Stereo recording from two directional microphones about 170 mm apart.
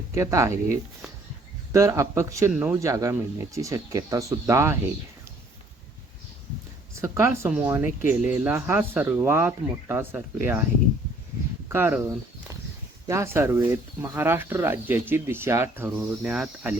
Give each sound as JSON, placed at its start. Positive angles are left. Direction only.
{"t": 0.1, "sound": "speech", "side_deg": -15}
{"t": 7.0, "sound": "speech", "side_deg": -15}
{"t": 11.7, "sound": "speech", "side_deg": -15}